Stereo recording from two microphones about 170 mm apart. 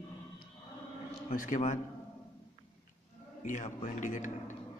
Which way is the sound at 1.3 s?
50° left (ahead or behind).